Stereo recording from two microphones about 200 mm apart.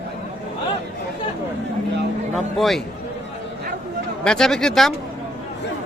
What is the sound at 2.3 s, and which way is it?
Speech, centre (ahead or behind).